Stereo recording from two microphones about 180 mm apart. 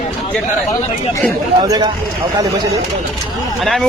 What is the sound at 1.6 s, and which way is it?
Speech, 20° right (ahead or behind).